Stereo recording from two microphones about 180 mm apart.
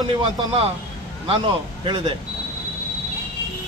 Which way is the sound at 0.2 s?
30° right (ahead or behind).